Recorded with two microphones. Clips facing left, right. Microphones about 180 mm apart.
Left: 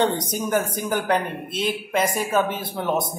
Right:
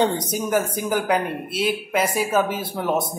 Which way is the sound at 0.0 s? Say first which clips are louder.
Right 1 dB; 10° right (ahead or behind).